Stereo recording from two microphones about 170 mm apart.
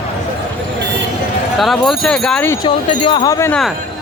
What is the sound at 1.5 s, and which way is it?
Wind chime, centre (ahead or behind).